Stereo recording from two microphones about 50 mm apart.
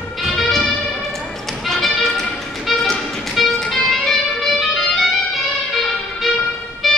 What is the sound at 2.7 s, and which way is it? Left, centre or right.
Music, centre.